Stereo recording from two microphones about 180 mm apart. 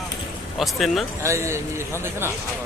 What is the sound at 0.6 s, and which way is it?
Speech, centre (ahead or behind).